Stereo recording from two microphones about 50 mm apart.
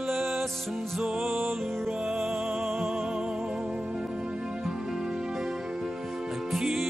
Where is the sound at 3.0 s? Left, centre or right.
Centre.